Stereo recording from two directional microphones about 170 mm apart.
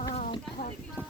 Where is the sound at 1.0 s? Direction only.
10° left (ahead or behind).